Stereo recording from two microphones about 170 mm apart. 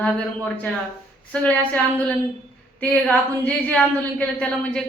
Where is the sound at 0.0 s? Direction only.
10° left (ahead or behind).